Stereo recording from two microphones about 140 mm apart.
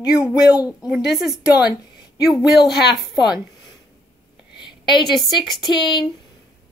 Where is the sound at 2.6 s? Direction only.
30° left (ahead or behind).